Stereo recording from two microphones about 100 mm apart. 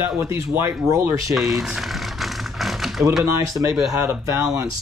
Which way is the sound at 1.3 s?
Centre (ahead or behind).